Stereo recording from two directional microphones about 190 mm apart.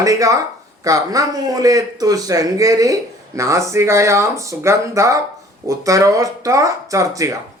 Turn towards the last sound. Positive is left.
turn(degrees=-15)  # may be behind; listen again after turning